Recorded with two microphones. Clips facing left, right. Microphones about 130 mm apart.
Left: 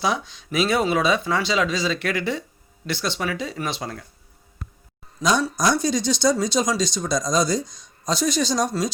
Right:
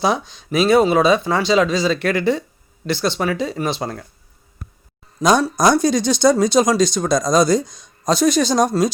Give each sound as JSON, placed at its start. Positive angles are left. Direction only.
{"t": 0.0, "sound": "speech", "side_deg": -35}
{"t": 5.2, "sound": "speech", "side_deg": -50}